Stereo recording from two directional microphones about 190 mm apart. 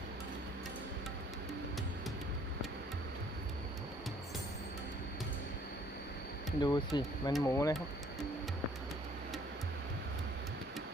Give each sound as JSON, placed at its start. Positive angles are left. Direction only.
{"t": 6.6, "sound": "speech", "side_deg": 20}